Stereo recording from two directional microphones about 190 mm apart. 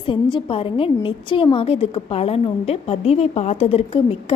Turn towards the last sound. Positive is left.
turn(degrees=30)  # may be behind; listen again after turning